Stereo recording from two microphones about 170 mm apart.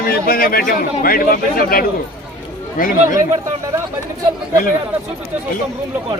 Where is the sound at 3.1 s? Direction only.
15° right (ahead or behind).